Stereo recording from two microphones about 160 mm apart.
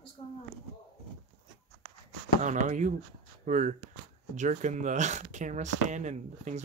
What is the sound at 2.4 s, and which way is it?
Speech, 50° right (ahead or behind).